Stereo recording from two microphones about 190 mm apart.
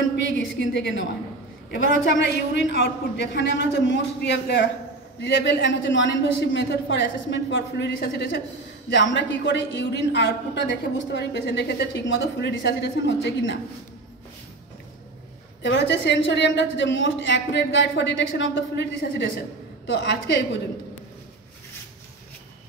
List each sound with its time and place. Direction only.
0.1 s a woman's voice: 70° left (ahead or behind)
15.6 s a woman's voice: 70° left (ahead or behind)